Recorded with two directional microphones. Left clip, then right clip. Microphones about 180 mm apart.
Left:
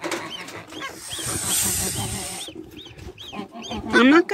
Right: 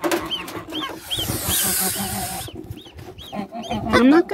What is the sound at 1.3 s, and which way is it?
Hiss, 15° right (ahead or behind).